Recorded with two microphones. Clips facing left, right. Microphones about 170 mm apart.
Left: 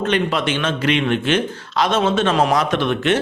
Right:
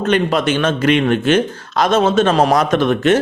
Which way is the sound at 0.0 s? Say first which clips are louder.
Right 4 dB; 45° right (ahead or behind).